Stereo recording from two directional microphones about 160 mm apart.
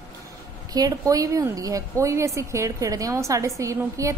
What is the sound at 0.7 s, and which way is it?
A woman's voice, 20° right (ahead or behind).